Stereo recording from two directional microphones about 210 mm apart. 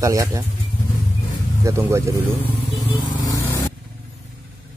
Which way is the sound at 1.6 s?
15° right (ahead or behind).